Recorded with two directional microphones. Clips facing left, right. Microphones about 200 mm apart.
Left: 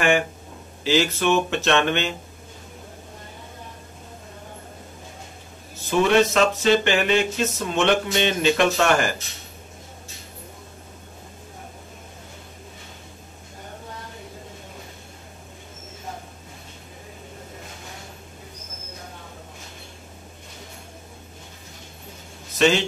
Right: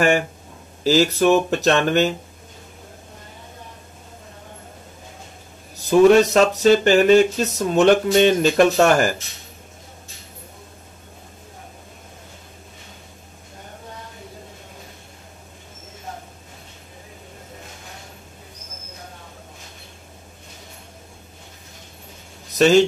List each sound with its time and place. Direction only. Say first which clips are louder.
0.8 s speech: right 5 dB; 40° right (ahead or behind)
5.9 s speech: right 6 dB; 40° right (ahead or behind)
22.6 s a man's voice: right 6 dB; 40° right (ahead or behind)